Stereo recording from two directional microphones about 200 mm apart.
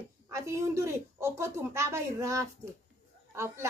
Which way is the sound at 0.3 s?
15° right (ahead or behind).